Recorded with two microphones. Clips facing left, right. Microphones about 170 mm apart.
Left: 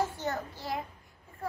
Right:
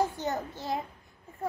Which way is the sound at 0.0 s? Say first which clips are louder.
Right 2 dB; 20° right (ahead or behind).